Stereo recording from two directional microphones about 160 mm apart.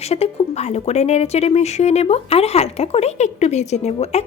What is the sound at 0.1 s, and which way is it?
A woman's voice, 40° left (ahead or behind).